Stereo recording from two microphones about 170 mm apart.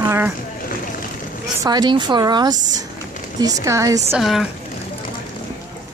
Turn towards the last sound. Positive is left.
turn(degrees=0)  # may be behind; listen again after turning